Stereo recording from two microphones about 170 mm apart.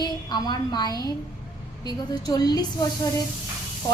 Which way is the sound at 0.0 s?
25° left (ahead or behind).